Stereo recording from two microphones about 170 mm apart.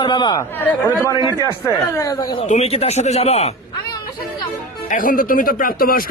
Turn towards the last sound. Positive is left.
turn(degrees=60)  # may be behind; listen again after turning